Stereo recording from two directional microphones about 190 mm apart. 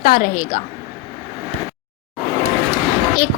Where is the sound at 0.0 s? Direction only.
50° left (ahead or behind).